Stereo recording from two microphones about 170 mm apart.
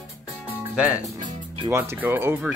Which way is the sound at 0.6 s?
10° right (ahead or behind).